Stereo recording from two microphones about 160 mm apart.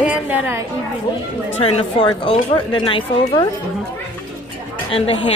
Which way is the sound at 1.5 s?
40° left (ahead or behind).